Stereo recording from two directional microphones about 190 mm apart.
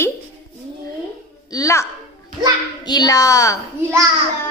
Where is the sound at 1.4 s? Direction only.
15° left (ahead or behind).